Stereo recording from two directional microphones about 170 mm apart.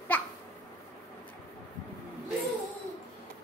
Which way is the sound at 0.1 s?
10° left (ahead or behind).